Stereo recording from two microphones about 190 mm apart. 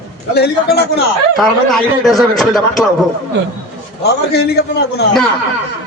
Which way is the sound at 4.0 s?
60° left (ahead or behind).